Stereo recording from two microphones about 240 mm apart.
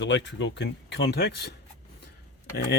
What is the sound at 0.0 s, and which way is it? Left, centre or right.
Speech, left.